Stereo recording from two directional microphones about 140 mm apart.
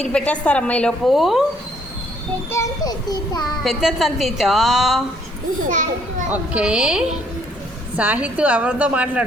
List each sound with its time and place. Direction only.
0.0 s a woman's voice: 5° left (ahead or behind)
2.5 s a child's voice: 25° left (ahead or behind)
3.4 s a woman's voice: centre (ahead or behind)
5.6 s a child's voice: 65° right (ahead or behind)
6.3 s a woman's voice: 5° right (ahead or behind)